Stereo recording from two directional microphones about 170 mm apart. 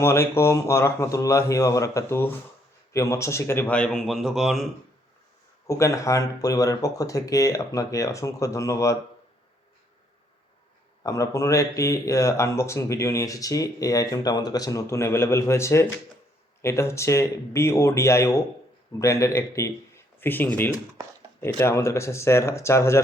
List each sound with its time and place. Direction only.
0.0 s speech: 15° left (ahead or behind); by 4.6 s centre (ahead or behind)
5.6 s speech: 20° left (ahead or behind)
11.0 s speech: 20° left (ahead or behind)